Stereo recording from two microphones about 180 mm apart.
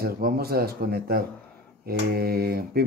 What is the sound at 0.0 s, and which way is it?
Speech, 55° right (ahead or behind).